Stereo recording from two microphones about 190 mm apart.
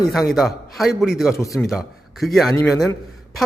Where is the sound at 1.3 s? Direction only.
15° left (ahead or behind).